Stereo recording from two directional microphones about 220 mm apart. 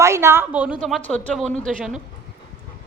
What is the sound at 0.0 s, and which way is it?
Speech, 10° right (ahead or behind).